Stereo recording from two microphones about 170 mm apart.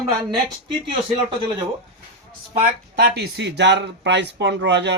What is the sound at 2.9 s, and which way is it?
Speech, 70° right (ahead or behind).